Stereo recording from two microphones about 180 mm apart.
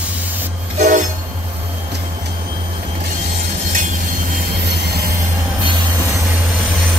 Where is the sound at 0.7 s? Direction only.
45° right (ahead or behind).